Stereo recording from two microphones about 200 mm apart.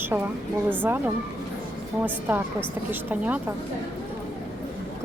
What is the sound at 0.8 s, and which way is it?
Speech, 10° right (ahead or behind).